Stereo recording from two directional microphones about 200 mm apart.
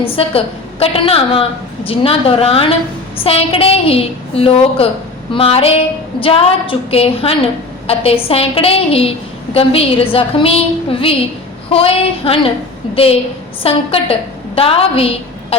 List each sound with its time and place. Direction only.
0.0 s a woman's voice: 30° left (ahead or behind)